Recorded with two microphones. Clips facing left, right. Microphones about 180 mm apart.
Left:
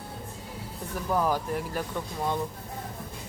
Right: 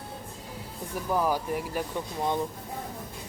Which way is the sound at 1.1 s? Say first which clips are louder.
Even; 10° right (ahead or behind).